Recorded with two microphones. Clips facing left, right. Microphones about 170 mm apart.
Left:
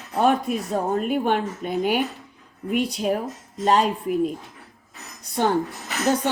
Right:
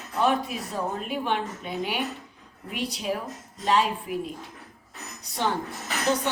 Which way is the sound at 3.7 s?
45° left (ahead or behind).